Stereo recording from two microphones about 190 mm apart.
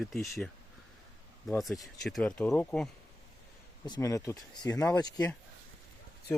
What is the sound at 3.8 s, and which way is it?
Speech, 20° left (ahead or behind).